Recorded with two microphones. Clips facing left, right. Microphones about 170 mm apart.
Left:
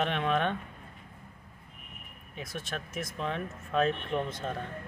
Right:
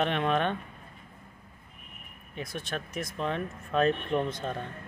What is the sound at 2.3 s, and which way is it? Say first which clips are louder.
Speech: right 3 dB; 5° left (ahead or behind).